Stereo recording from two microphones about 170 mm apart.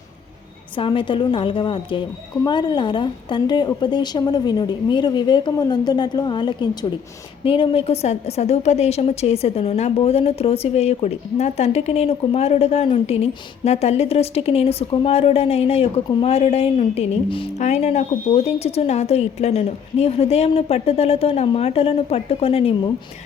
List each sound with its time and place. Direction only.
0.8 s a woman's voice: 30° left (ahead or behind)